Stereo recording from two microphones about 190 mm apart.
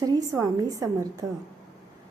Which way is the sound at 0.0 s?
20° right (ahead or behind).